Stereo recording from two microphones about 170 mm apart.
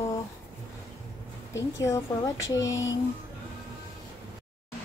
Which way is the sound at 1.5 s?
20° left (ahead or behind).